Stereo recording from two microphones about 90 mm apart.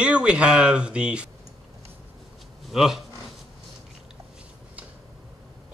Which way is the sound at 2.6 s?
5° right (ahead or behind).